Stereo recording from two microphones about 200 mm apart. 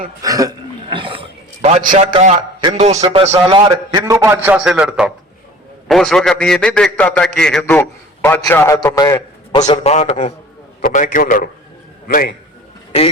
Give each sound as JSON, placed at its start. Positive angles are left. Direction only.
{"t": 0.2, "sound": "a sound", "side_deg": -15}
{"t": 2.1, "sound": "a man's voice", "side_deg": -30}
{"t": 9.5, "sound": "a man's voice", "side_deg": 35}